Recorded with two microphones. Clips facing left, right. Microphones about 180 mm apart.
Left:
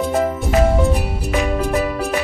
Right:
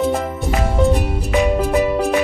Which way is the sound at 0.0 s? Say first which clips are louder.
Left 1 dB; centre (ahead or behind).